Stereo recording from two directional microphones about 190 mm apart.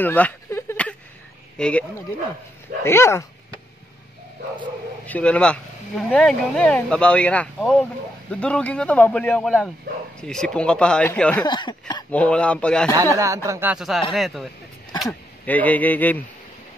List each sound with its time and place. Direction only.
0.0 s a sound: 10° left (ahead or behind)
1.6 s a man's voice: 5° left (ahead or behind)
5.0 s a man's voice: 5° left (ahead or behind)
11.4 s speech: 25° left (ahead or behind)
12.1 s speech: 5° left (ahead or behind)
12.9 s a man's voice: 15° right (ahead or behind); by 16.2 s 10° left (ahead or behind)